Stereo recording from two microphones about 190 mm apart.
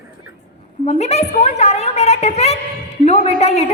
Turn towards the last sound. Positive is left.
turn(degrees=35)  # may be behind; listen again after turning